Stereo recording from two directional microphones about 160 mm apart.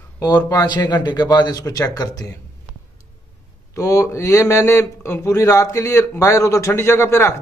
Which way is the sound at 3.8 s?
20° left (ahead or behind).